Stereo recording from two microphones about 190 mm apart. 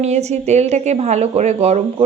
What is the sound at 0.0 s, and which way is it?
Speech, 35° right (ahead or behind).